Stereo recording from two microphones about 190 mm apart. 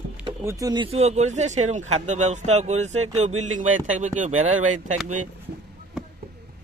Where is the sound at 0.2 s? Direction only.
15° right (ahead or behind); by 5.3 s 40° right (ahead or behind).